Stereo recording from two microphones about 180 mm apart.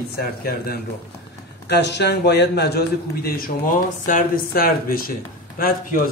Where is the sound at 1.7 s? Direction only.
70° left (ahead or behind).